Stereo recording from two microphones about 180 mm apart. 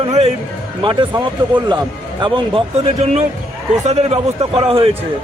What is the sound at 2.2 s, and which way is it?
Speech, 25° right (ahead or behind).